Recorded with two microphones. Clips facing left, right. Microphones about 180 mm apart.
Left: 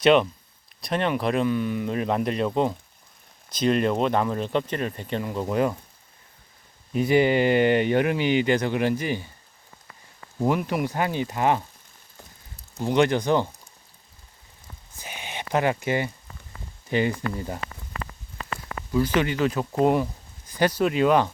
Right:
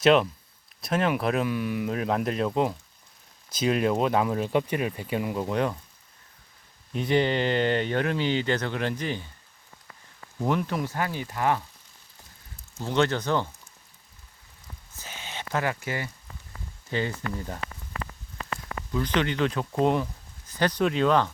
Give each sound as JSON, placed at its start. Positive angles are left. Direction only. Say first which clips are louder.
{"t": 0.0, "sound": "speech", "louder": "left 2 dB", "side_deg": 0}
{"t": 6.9, "sound": "speech", "louder": "left 4 dB", "side_deg": 5}
{"t": 10.3, "sound": "speech", "louder": "left 3 dB", "side_deg": 10}
{"t": 12.8, "sound": "speech", "louder": "left 4 dB", "side_deg": 15}
{"t": 14.9, "sound": "a sound", "louder": "left 3 dB", "side_deg": 15}
{"t": 16.9, "sound": "speech", "louder": "left 5 dB", "side_deg": 15}
{"t": 18.9, "sound": "speech", "louder": "left 4 dB", "side_deg": 5}